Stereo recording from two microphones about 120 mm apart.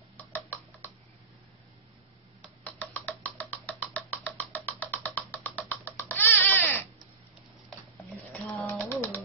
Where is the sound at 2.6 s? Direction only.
15° left (ahead or behind).